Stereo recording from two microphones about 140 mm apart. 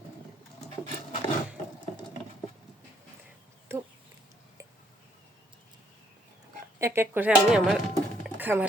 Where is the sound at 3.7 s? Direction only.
20° right (ahead or behind).